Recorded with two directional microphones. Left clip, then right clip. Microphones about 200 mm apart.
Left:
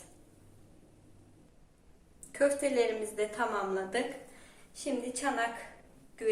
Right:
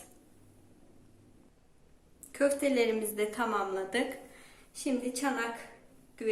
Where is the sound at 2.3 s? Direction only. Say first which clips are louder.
Even; 30° right (ahead or behind).